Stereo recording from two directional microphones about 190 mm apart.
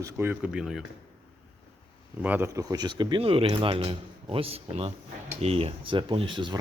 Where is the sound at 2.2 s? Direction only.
10° right (ahead or behind).